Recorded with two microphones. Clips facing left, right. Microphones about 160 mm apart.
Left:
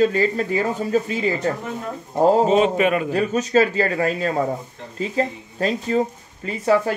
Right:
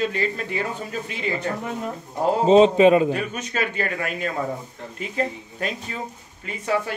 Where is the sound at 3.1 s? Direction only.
35° left (ahead or behind).